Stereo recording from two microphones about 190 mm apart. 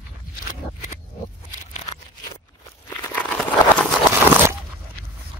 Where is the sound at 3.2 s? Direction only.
5° left (ahead or behind).